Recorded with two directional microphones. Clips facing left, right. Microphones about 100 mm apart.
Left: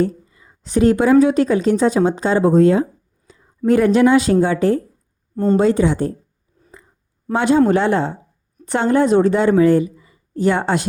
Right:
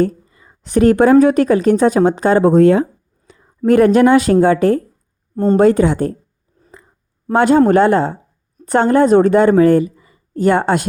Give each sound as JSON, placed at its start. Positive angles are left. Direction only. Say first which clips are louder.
{"t": 0.0, "sound": "a woman's voice", "louder": "right 3 dB", "side_deg": -55}
{"t": 3.3, "sound": "a sound", "louder": "right 2 dB", "side_deg": -65}
{"t": 3.7, "sound": "a woman's voice", "louder": "right 3 dB", "side_deg": -55}
{"t": 7.3, "sound": "a woman's voice", "louder": "right 4 dB", "side_deg": -50}